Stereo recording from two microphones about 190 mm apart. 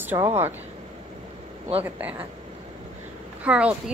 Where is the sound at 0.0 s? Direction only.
10° right (ahead or behind).